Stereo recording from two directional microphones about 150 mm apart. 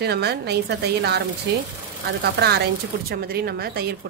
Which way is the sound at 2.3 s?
90° right.